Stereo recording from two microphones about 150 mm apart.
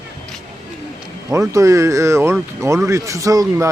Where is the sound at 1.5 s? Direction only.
20° right (ahead or behind).